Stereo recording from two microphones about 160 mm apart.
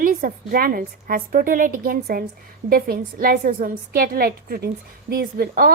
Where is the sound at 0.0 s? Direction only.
60° right (ahead or behind).